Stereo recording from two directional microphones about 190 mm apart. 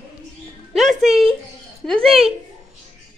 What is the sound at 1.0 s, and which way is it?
Speech, centre (ahead or behind).